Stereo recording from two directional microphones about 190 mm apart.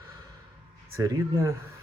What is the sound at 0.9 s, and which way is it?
Speech, 15° right (ahead or behind).